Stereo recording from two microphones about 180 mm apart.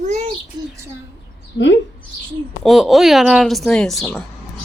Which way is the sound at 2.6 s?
Centre (ahead or behind).